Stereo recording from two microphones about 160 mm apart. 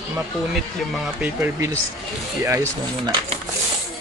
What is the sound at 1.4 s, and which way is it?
Speech, 20° right (ahead or behind).